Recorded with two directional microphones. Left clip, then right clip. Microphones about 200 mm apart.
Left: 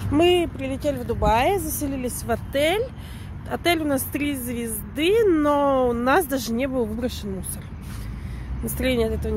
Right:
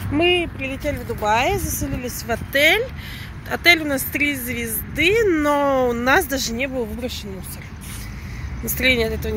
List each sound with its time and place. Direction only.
0.1 s speech: 20° left (ahead or behind)
2.3 s speech: 5° left (ahead or behind); by 7.2 s 30° left (ahead or behind)
8.6 s speech: 10° left (ahead or behind)